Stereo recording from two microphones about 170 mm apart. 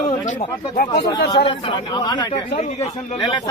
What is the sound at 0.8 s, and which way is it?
Speech, 25° left (ahead or behind).